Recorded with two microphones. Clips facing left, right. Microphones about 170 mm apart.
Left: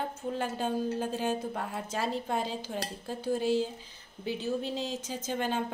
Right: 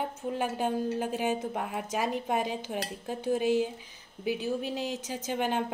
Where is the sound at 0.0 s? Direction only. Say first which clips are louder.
Right 2 dB; 15° right (ahead or behind).